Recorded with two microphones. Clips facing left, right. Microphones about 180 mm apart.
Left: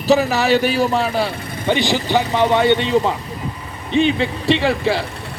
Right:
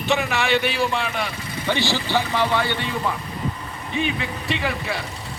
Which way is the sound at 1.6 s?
20° left (ahead or behind).